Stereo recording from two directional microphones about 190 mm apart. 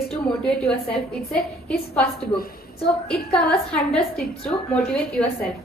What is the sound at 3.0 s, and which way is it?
Speech, 5° left (ahead or behind).